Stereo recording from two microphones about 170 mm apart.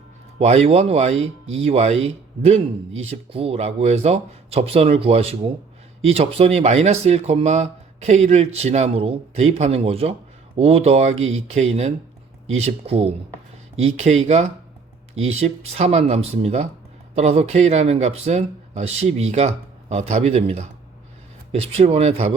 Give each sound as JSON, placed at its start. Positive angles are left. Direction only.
{"t": 0.3, "sound": "speech", "side_deg": -35}